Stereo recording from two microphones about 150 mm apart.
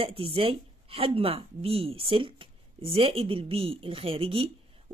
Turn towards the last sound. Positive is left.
turn(degrees=-40)  # may be behind; listen again after turning